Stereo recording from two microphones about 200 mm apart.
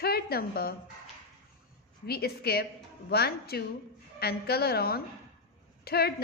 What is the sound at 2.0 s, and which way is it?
A woman's voice, 50° left (ahead or behind).